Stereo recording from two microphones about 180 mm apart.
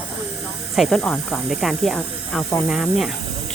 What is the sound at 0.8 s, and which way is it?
Speech, centre (ahead or behind).